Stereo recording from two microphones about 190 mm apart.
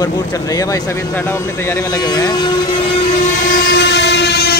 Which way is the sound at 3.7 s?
65° left (ahead or behind).